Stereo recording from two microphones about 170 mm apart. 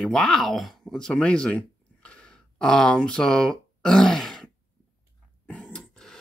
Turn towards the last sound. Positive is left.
turn(degrees=5)  # may be behind; listen again after turning